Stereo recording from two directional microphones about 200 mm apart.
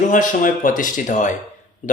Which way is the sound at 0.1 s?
40° left (ahead or behind).